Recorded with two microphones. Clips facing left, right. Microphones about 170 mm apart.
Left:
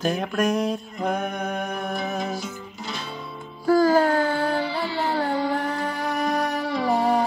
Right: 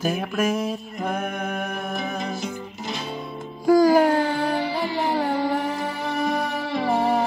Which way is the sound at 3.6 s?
15° right (ahead or behind).